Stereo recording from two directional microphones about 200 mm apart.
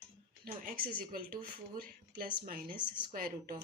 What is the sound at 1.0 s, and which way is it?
Speech, 45° right (ahead or behind).